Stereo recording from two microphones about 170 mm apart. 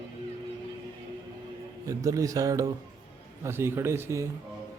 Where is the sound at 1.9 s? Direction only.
20° right (ahead or behind).